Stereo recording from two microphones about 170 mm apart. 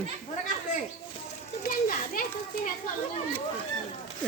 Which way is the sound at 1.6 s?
55° left (ahead or behind).